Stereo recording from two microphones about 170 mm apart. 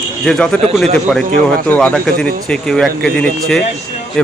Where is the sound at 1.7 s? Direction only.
10° left (ahead or behind).